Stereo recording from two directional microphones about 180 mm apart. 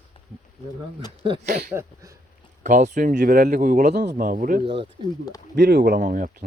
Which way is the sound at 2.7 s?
45° right (ahead or behind).